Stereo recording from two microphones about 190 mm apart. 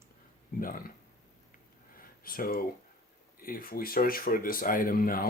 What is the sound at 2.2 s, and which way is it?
Speech, 50° left (ahead or behind).